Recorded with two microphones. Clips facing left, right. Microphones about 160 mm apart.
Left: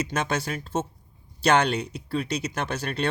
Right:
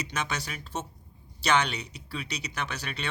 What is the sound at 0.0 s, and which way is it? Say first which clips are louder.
Speech: left 6 dB; 50° left (ahead or behind).